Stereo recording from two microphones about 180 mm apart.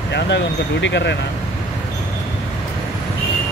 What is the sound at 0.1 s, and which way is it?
Speech, 75° left (ahead or behind).